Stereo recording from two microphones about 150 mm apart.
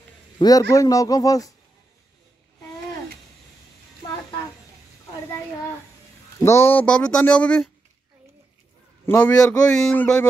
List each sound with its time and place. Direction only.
0.4 s a man's voice: 25° left (ahead or behind)
6.4 s speech: 15° left (ahead or behind)
9.0 s a man's voice: 10° left (ahead or behind)